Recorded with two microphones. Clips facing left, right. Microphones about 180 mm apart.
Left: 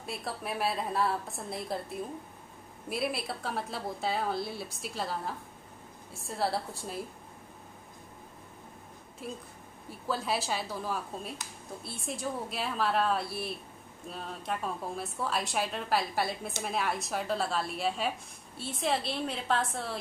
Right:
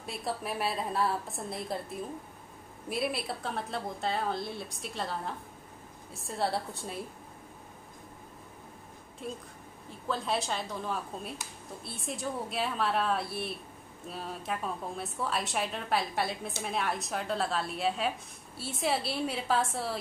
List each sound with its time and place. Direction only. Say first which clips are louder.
0.0 s a woman's voice: right 2 dB; centre (ahead or behind)
2.9 s a woman's voice: even; centre (ahead or behind)
9.2 s a woman's voice: right 1 dB; 5° left (ahead or behind)